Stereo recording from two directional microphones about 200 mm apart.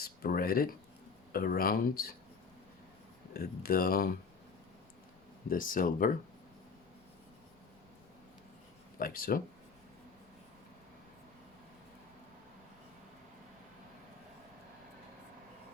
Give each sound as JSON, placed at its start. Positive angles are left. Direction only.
{"t": 0.0, "sound": "speech", "side_deg": 50}
{"t": 3.3, "sound": "speech", "side_deg": 50}
{"t": 5.5, "sound": "speech", "side_deg": 45}
{"t": 9.0, "sound": "speech", "side_deg": 45}